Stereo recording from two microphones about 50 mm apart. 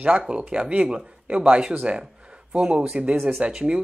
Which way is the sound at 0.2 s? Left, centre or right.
Centre.